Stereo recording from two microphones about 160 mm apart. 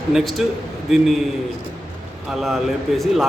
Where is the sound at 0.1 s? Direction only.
Centre (ahead or behind).